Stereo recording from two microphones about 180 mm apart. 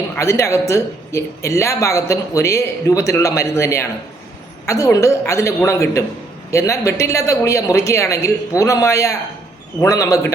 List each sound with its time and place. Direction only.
0.2 s speech: 15° left (ahead or behind)